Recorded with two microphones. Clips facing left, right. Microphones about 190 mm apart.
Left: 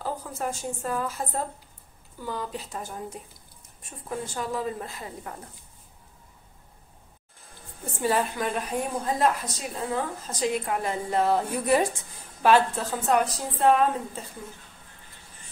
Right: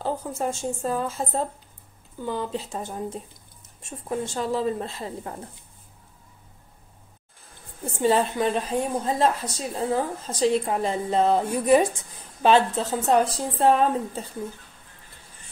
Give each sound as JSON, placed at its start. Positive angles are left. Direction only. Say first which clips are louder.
{"t": 0.0, "sound": "a woman's voice", "louder": "right 4 dB", "side_deg": -25}
{"t": 8.0, "sound": "a woman's voice", "louder": "right 4 dB", "side_deg": -25}